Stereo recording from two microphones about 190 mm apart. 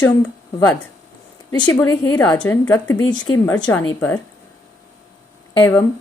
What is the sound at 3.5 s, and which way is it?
Speech, 20° left (ahead or behind).